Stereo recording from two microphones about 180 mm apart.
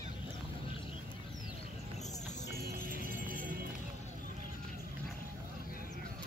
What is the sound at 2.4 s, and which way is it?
Music, 55° right (ahead or behind).